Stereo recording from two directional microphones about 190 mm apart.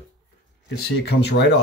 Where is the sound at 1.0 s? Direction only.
65° left (ahead or behind).